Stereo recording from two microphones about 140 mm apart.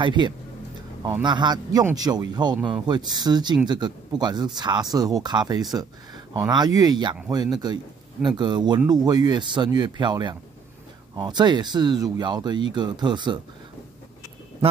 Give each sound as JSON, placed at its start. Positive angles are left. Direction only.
{"t": 0.0, "sound": "speech", "side_deg": -30}